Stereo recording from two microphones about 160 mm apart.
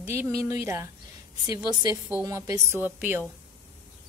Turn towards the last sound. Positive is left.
turn(degrees=-10)  # may be behind; listen again after turning